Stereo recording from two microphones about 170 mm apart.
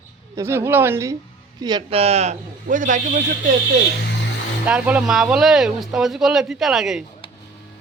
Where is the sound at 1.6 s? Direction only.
25° right (ahead or behind); by 3.2 s 50° right (ahead or behind).